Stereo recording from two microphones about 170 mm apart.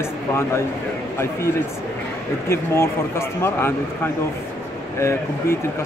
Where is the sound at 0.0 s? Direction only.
15° left (ahead or behind).